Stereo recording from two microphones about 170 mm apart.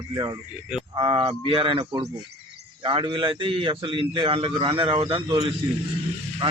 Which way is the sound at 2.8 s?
30° right (ahead or behind).